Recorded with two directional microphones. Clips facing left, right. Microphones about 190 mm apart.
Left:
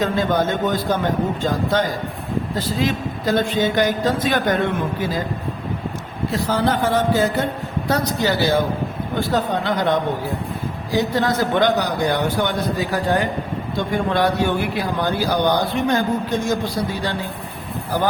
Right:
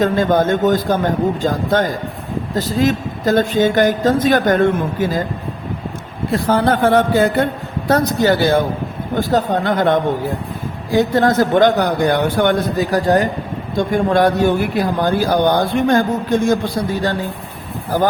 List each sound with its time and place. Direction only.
0.0 s a woman's voice: 50° right (ahead or behind)
6.3 s a woman's voice: 55° right (ahead or behind)